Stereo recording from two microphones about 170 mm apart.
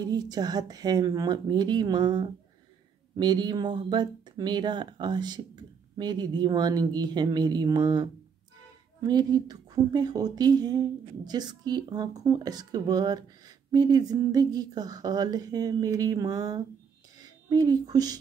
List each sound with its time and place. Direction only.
0.0 s a woman's voice: 25° right (ahead or behind)